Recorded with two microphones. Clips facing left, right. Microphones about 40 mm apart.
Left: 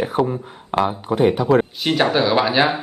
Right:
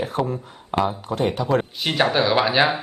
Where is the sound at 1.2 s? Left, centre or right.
Centre.